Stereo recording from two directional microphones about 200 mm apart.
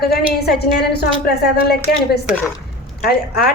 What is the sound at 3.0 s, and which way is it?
Speech, 50° left (ahead or behind).